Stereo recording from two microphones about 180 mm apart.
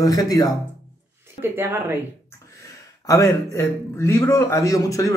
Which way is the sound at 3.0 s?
20° left (ahead or behind).